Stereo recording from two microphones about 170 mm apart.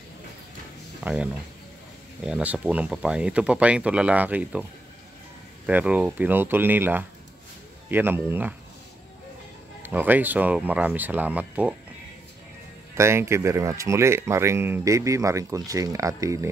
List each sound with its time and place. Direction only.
1.0 s speech: 5° right (ahead or behind)
5.7 s speech: 10° right (ahead or behind)
9.8 s speech: 10° right (ahead or behind)
12.9 s speech: 15° right (ahead or behind)